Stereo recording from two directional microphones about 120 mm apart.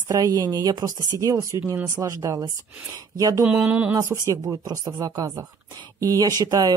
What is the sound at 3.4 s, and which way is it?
Speech, 10° right (ahead or behind).